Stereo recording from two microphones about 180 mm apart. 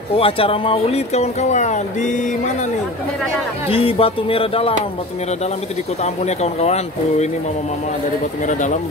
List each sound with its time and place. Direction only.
0.1 s speech: 30° left (ahead or behind)
3.6 s speech: 30° left (ahead or behind)
6.0 s speech: 35° left (ahead or behind)
8.5 s speech: 40° left (ahead or behind)